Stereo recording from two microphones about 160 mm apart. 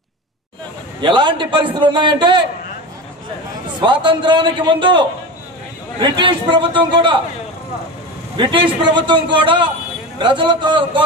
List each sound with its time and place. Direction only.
1.0 s a man's voice: 30° right (ahead or behind)
3.8 s a man's voice: 30° right (ahead or behind)
8.4 s a man's voice: 30° right (ahead or behind)